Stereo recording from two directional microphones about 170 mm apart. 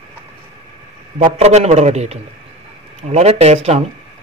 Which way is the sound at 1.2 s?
40° right (ahead or behind).